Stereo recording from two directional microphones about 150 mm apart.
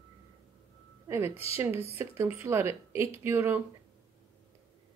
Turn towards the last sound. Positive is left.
turn(degrees=-15)  # may be behind; listen again after turning